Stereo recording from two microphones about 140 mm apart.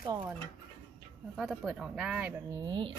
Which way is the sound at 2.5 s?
30° right (ahead or behind).